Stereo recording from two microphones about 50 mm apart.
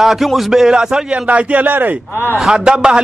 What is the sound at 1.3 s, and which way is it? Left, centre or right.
Speech, right.